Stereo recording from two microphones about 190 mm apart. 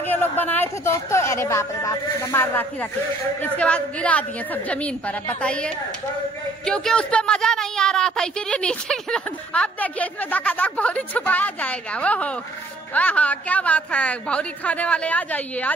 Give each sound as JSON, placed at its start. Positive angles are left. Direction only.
{"t": 0.0, "sound": "speech", "side_deg": 10}